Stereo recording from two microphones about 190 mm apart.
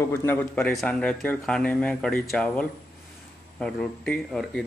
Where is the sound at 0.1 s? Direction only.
10° left (ahead or behind).